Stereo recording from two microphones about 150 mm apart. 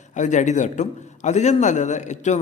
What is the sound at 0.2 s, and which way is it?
A man's voice, 55° left (ahead or behind).